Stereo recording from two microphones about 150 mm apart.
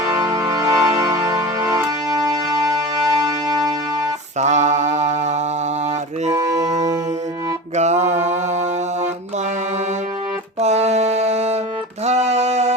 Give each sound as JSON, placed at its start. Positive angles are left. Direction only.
{"t": 0.3, "sound": "music", "side_deg": -20}
{"t": 4.4, "sound": "mantra", "side_deg": -50}
{"t": 6.3, "sound": "music", "side_deg": -25}
{"t": 7.8, "sound": "mantra", "side_deg": -50}
{"t": 10.6, "sound": "music", "side_deg": -45}